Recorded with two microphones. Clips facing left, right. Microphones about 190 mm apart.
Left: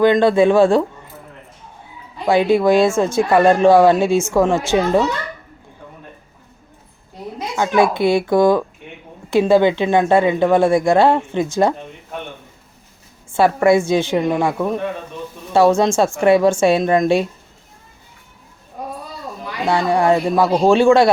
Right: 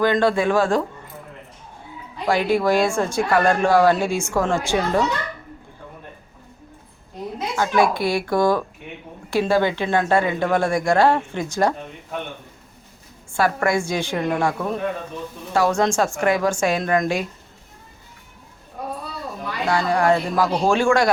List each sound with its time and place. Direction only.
0.0 s a woman's voice: 20° left (ahead or behind)
2.2 s a woman's voice: 20° left (ahead or behind)
7.5 s a woman's voice: 20° left (ahead or behind)
13.3 s a woman's voice: 25° left (ahead or behind)
19.7 s a woman's voice: 20° left (ahead or behind)